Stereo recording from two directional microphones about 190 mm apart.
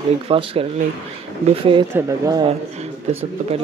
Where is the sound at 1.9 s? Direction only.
15° right (ahead or behind).